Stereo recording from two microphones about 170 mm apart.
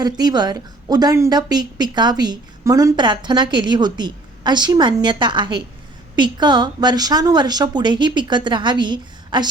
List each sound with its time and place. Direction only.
0.0 s a woman's voice: 25° right (ahead or behind)